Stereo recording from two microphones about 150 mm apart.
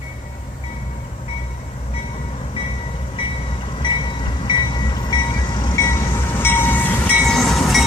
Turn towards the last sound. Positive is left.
turn(degrees=0)  # may be behind; listen again after turning